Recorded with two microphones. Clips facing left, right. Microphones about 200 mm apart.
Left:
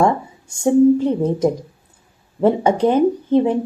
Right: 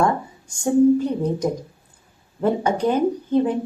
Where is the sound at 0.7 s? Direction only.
25° left (ahead or behind).